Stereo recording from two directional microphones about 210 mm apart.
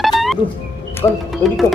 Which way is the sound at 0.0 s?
Centre (ahead or behind).